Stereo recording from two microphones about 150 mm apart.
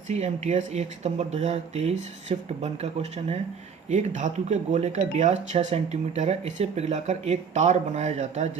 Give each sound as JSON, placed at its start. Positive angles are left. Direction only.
{"t": 0.1, "sound": "speech", "side_deg": -50}